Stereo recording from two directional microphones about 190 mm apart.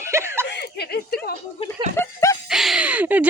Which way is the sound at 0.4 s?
60° left (ahead or behind).